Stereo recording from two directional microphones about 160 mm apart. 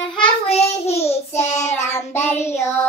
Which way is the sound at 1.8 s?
15° left (ahead or behind).